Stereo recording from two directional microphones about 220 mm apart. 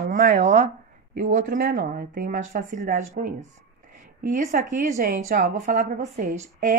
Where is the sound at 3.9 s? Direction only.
35° right (ahead or behind).